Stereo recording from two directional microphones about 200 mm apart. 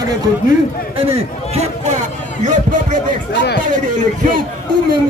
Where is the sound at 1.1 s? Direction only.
35° right (ahead or behind).